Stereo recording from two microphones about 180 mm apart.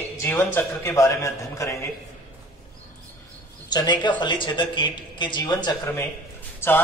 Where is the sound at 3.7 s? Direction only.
25° left (ahead or behind).